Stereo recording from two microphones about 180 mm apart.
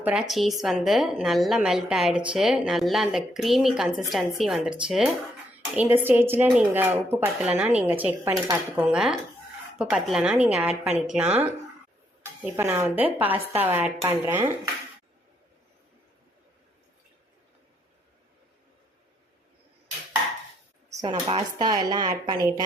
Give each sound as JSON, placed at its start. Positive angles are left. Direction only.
{"t": 0.0, "sound": "a woman's voice", "side_deg": -5}
{"t": 13.3, "sound": "a woman's voice", "side_deg": -30}
{"t": 13.6, "sound": "speech", "side_deg": -10}
{"t": 20.9, "sound": "speech", "side_deg": -25}